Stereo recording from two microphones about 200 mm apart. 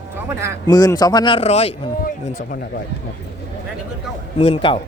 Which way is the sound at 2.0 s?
45° left (ahead or behind).